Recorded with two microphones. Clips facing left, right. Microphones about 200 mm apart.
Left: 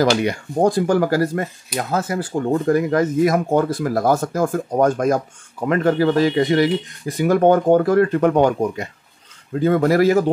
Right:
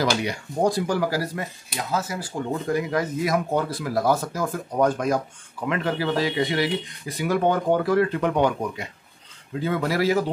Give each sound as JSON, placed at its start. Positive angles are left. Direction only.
{"t": 0.1, "sound": "speech", "side_deg": 55}